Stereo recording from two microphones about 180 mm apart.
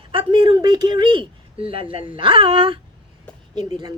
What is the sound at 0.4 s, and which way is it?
A woman's voice, 20° right (ahead or behind).